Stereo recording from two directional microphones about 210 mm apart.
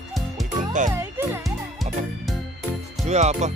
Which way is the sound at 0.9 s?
10° right (ahead or behind).